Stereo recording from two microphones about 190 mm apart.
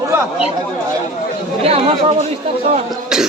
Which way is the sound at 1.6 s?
30° right (ahead or behind).